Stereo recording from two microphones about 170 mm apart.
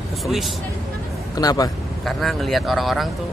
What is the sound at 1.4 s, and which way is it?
Speech, 20° left (ahead or behind).